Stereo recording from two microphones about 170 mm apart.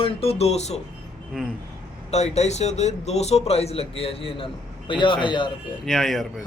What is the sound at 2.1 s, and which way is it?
A man's voice, 40° left (ahead or behind).